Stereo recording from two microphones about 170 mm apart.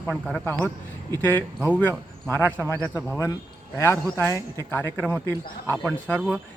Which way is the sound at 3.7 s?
15° left (ahead or behind).